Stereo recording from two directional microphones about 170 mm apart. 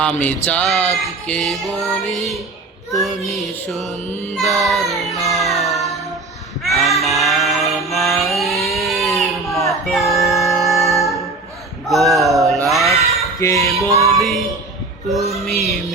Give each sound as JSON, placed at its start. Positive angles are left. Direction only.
{"t": 0.0, "sound": "music", "side_deg": 10}
{"t": 2.9, "sound": "speech", "side_deg": 0}
{"t": 4.4, "sound": "child singing", "side_deg": 0}
{"t": 6.7, "sound": "a sound", "side_deg": 0}
{"t": 10.1, "sound": "music", "side_deg": 0}
{"t": 11.9, "sound": "a sound", "side_deg": 0}
{"t": 13.4, "sound": "music", "side_deg": 15}
{"t": 13.8, "sound": "music", "side_deg": -20}
{"t": 14.2, "sound": "music", "side_deg": 0}
{"t": 15.3, "sound": "speech", "side_deg": 0}